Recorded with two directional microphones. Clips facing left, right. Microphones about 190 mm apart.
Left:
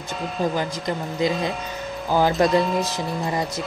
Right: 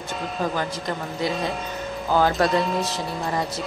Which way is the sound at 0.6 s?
15° left (ahead or behind).